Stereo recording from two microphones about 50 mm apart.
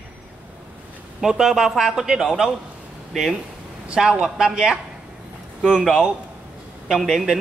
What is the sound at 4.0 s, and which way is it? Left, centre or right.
Speech, centre.